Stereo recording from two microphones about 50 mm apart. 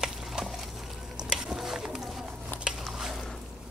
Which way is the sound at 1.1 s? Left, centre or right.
Centre.